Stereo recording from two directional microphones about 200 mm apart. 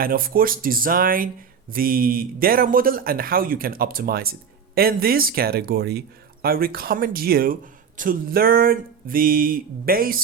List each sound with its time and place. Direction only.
0.0 s speech: 45° right (ahead or behind)